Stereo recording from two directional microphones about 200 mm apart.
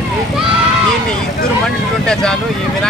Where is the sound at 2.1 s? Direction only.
5° left (ahead or behind).